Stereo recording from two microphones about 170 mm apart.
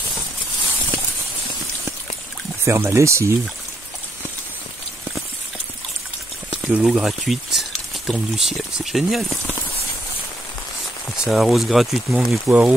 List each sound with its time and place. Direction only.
2.6 s speech: 15° right (ahead or behind)
6.7 s speech: 5° right (ahead or behind)
11.2 s speech: centre (ahead or behind)